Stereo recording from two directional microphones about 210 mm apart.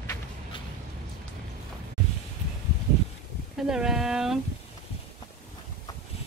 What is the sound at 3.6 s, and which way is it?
Speech, 5° right (ahead or behind).